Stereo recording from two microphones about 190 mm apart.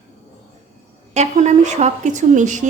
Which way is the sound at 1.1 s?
35° right (ahead or behind).